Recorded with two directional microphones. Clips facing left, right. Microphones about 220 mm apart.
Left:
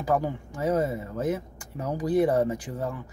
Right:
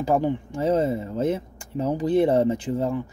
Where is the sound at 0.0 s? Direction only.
25° right (ahead or behind).